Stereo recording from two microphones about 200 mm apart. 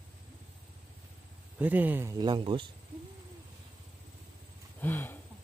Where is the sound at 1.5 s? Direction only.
10° right (ahead or behind); by 2.7 s 25° right (ahead or behind).